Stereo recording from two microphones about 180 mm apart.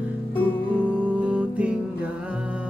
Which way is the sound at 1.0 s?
5° right (ahead or behind).